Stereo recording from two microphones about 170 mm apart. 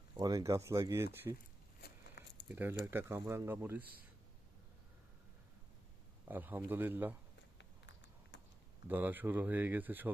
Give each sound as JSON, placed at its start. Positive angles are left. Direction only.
{"t": 0.2, "sound": "speech", "side_deg": -20}
{"t": 1.8, "sound": "a sound", "side_deg": 80}
{"t": 2.5, "sound": "speech", "side_deg": -10}
{"t": 6.2, "sound": "speech", "side_deg": -10}
{"t": 7.6, "sound": "a sound", "side_deg": 90}
{"t": 8.9, "sound": "speech", "side_deg": -10}